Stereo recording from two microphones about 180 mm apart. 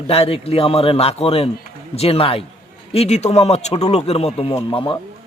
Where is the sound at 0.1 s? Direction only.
30° left (ahead or behind).